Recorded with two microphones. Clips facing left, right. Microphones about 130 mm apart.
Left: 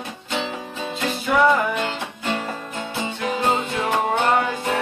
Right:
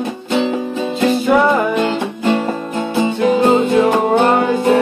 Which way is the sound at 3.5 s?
40° right (ahead or behind).